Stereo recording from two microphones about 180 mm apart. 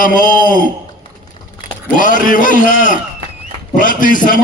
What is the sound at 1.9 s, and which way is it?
A man's voice, 50° left (ahead or behind).